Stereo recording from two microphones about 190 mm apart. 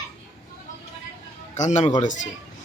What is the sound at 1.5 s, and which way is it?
Speech, 40° left (ahead or behind).